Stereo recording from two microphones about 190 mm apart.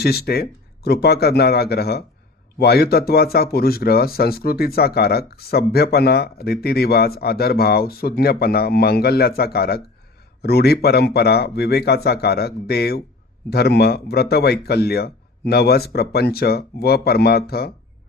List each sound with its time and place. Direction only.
0.0 s speech: 55° left (ahead or behind)